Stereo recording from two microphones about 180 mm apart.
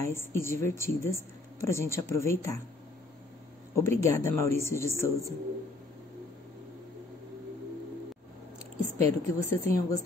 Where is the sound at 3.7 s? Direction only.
15° left (ahead or behind).